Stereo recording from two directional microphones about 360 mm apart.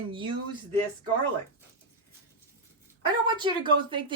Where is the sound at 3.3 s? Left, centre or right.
Centre.